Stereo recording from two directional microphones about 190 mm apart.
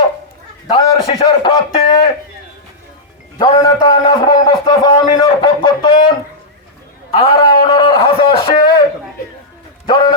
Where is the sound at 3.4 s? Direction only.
20° left (ahead or behind).